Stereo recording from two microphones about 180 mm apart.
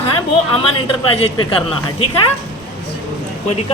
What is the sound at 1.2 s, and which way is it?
Speech, 30° left (ahead or behind).